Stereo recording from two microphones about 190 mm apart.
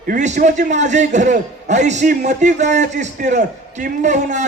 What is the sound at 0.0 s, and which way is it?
A man's voice, 40° right (ahead or behind).